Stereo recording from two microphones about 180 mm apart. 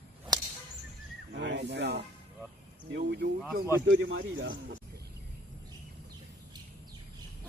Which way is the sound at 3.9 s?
90° right.